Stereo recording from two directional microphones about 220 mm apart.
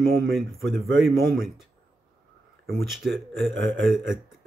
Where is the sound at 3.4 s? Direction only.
55° right (ahead or behind).